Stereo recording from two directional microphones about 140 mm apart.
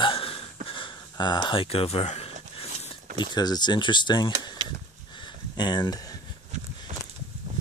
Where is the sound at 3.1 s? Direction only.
30° left (ahead or behind).